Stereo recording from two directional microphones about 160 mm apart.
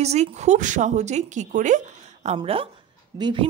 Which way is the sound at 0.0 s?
45° right (ahead or behind).